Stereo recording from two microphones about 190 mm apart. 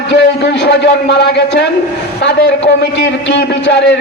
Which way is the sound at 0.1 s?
65° left (ahead or behind).